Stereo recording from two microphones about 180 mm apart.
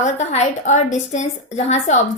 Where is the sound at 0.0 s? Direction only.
40° left (ahead or behind).